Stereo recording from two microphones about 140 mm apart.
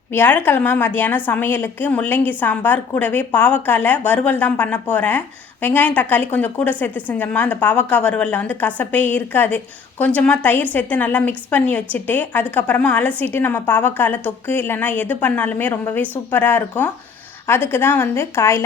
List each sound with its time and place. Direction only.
0.1 s a woman's voice: 15° left (ahead or behind)